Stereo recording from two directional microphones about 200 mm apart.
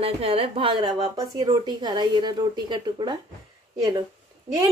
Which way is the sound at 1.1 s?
15° right (ahead or behind).